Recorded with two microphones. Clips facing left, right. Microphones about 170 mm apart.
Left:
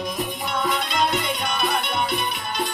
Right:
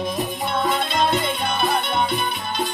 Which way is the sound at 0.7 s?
30° right (ahead or behind).